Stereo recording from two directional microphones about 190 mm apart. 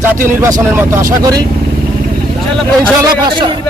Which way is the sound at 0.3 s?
15° right (ahead or behind).